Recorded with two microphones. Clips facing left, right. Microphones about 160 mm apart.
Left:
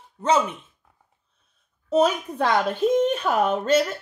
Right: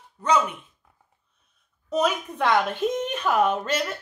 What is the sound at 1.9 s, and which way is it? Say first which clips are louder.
Speech: left 4 dB; 35° left (ahead or behind).